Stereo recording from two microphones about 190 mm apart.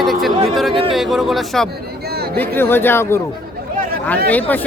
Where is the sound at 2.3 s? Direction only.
10° left (ahead or behind).